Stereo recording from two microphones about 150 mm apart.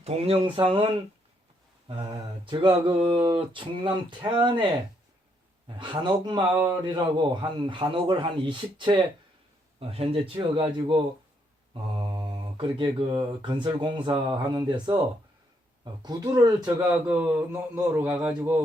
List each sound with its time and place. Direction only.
0.0 s speech: 40° right (ahead or behind)
1.9 s speech: 35° right (ahead or behind)
17.1 s a man's voice: 10° right (ahead or behind)